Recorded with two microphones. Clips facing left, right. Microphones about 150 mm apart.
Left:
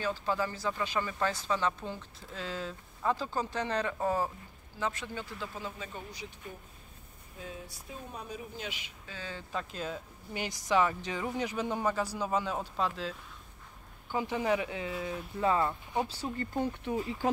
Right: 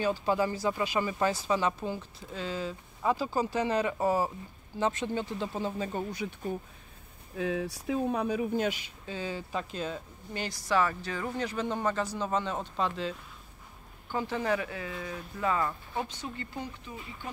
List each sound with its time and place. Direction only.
0.0 s speech: 15° right (ahead or behind)
4.7 s speech: 25° right (ahead or behind)
5.9 s speech: 50° right (ahead or behind)
7.3 s speech: 90° right; by 8.6 s 70° right (ahead or behind)
8.6 s speech: 40° right (ahead or behind)
9.0 s speech: 15° right (ahead or behind); by 10.0 s centre (ahead or behind)
10.3 s speech: 15° left (ahead or behind)
14.1 s speech: 15° left (ahead or behind)
15.4 s speech: 25° left (ahead or behind)
16.1 s speech: 40° left (ahead or behind)
17.2 s speech: 90° left